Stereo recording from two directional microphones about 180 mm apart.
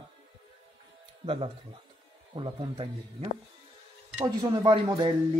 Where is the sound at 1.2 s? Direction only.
30° right (ahead or behind).